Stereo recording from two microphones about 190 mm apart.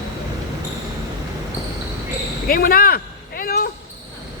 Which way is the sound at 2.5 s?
50° left (ahead or behind).